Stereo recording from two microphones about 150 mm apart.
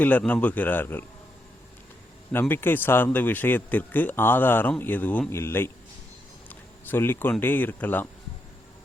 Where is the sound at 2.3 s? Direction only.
15° left (ahead or behind).